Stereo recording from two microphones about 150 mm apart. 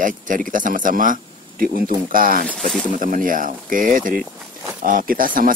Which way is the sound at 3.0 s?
65° right (ahead or behind).